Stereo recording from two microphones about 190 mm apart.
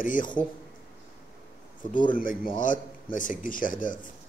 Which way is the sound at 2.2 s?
45° left (ahead or behind).